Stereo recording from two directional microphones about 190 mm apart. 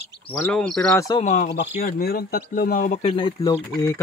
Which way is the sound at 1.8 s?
50° left (ahead or behind).